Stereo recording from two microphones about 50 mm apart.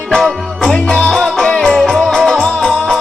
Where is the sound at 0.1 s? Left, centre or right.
Centre.